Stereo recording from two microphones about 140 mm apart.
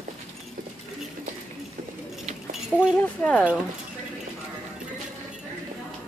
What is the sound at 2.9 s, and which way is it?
Speech, 10° left (ahead or behind).